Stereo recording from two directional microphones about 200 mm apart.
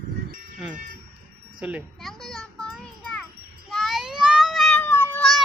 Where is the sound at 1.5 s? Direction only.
5° right (ahead or behind).